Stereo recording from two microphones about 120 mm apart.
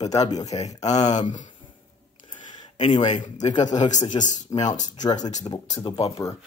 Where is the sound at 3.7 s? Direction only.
90° left.